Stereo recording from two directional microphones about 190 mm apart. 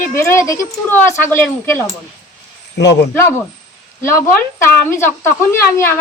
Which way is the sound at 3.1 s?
10° left (ahead or behind).